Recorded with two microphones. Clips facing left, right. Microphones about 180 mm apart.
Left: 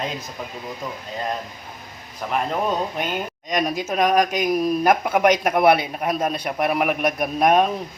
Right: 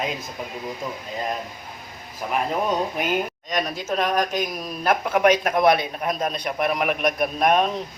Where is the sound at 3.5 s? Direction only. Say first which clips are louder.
Left 3 dB; 10° left (ahead or behind).